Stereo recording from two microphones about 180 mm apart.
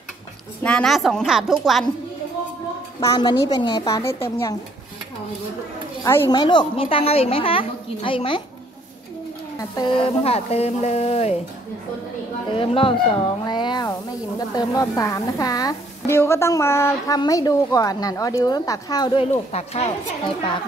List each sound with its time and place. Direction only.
0.7 s a woman's voice: 5° left (ahead or behind)
3.0 s a woman's voice: 20° left (ahead or behind)
6.0 s a woman's voice: 15° left (ahead or behind)
6.4 s a woman's voice: 25° left (ahead or behind)
9.6 s a woman's voice: 25° left (ahead or behind)
12.4 s a woman's voice: 30° left (ahead or behind)
19.5 s a woman's voice: 35° left (ahead or behind)